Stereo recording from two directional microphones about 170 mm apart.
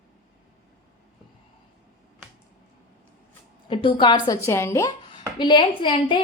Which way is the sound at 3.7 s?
30° left (ahead or behind).